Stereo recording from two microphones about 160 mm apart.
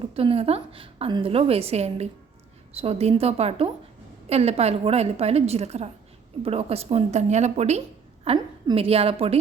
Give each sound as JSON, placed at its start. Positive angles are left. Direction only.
{"t": 0.0, "sound": "a woman's voice", "side_deg": -35}